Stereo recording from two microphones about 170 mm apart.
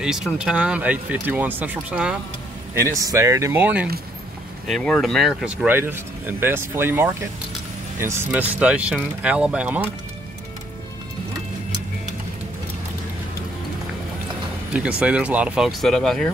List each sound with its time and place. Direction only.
0.0 s speech: 5° right (ahead or behind)
2.7 s speech: 15° right (ahead or behind)
4.6 s speech: 5° left (ahead or behind)
14.7 s speech: 5° right (ahead or behind)